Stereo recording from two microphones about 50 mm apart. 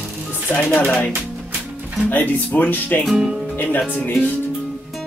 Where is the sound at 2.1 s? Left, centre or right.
Left.